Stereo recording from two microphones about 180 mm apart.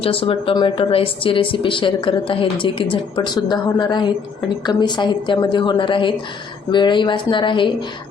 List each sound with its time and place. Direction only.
0.0 s speech: 30° left (ahead or behind)